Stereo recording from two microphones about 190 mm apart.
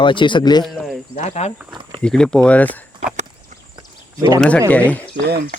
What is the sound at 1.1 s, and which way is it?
Speech, 35° left (ahead or behind).